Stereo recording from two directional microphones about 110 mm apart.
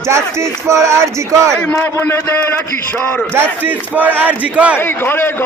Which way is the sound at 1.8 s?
20° left (ahead or behind).